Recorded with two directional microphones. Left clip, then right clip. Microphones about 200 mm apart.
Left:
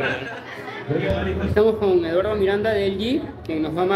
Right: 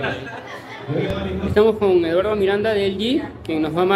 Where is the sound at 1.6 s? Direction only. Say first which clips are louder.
Right 3 dB; 15° right (ahead or behind).